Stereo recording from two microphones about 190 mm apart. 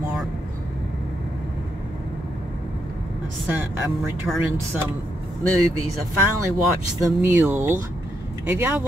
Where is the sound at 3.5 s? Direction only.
10° right (ahead or behind).